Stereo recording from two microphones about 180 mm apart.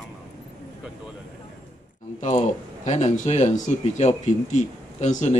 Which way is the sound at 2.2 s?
45° left (ahead or behind).